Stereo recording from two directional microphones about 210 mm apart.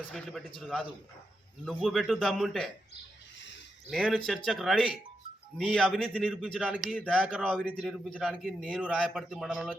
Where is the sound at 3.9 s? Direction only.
Centre (ahead or behind).